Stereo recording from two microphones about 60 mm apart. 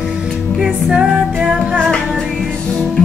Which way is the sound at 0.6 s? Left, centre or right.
Centre.